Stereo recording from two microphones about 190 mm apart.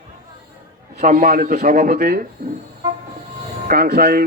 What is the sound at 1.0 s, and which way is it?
A man's voice, 45° right (ahead or behind).